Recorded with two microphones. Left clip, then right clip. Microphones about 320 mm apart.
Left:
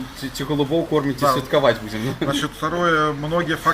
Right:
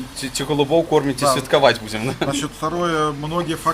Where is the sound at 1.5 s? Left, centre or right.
Right.